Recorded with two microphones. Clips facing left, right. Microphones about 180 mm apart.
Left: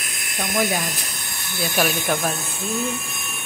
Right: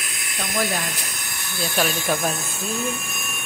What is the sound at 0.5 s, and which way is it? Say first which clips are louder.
Speech: left 2 dB; 15° left (ahead or behind).